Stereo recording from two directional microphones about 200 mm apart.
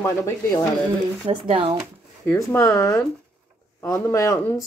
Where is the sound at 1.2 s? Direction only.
25° right (ahead or behind).